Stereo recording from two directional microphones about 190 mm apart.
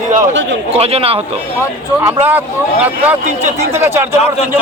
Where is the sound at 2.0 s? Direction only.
10° right (ahead or behind).